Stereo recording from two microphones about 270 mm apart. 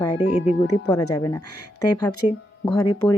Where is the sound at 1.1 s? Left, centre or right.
Centre.